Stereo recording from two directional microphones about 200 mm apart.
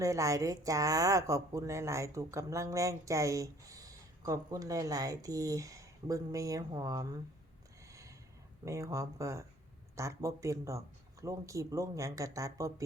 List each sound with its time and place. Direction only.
0.0 s speech: 15° right (ahead or behind)
8.6 s speech: 15° right (ahead or behind)